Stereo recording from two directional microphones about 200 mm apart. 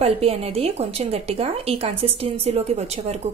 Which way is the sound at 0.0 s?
30° right (ahead or behind).